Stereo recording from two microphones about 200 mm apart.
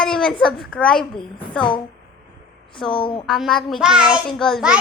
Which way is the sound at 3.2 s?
Centre (ahead or behind).